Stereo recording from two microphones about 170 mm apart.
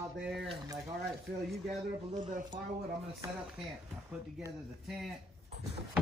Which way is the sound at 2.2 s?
45° right (ahead or behind).